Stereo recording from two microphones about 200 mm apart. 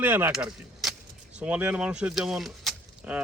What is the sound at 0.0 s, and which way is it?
Speech, 10° right (ahead or behind).